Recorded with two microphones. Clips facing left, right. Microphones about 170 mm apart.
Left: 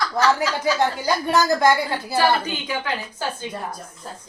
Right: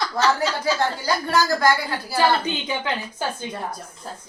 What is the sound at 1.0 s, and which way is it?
Speech, 20° left (ahead or behind).